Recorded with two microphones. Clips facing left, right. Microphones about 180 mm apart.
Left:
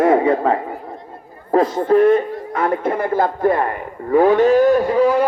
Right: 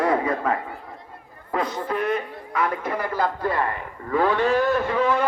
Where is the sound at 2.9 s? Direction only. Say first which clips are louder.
Left 6 dB; 50° left (ahead or behind).